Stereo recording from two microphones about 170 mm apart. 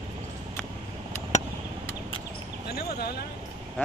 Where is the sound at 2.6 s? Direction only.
65° left (ahead or behind).